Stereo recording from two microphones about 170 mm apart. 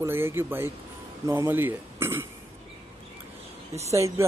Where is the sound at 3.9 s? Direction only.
15° right (ahead or behind).